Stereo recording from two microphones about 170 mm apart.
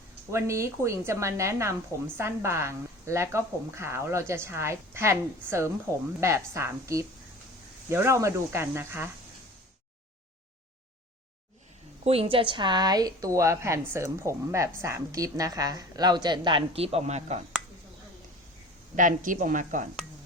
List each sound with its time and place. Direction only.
0.3 s a woman's voice: 15° right (ahead or behind)
12.0 s a woman's voice: 35° right (ahead or behind)
18.9 s speech: 50° right (ahead or behind)